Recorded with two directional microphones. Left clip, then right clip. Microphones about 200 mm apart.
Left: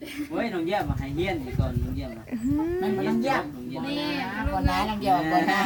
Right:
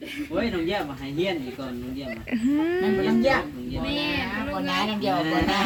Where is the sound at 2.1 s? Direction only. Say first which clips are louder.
Right 5 dB; centre (ahead or behind).